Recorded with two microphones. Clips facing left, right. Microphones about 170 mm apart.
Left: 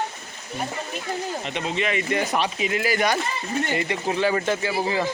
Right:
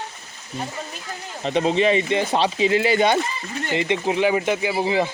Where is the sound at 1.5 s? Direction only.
35° right (ahead or behind); by 5.0 s 20° right (ahead or behind).